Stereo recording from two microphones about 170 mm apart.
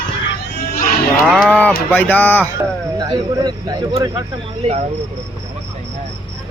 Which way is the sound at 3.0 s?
25° right (ahead or behind).